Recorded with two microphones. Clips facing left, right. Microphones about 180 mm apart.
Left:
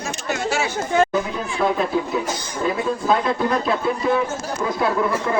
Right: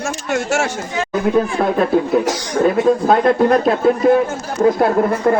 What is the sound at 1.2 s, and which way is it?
Speech, 60° right (ahead or behind).